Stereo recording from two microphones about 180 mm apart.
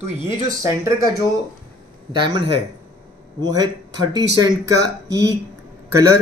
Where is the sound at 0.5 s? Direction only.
15° right (ahead or behind).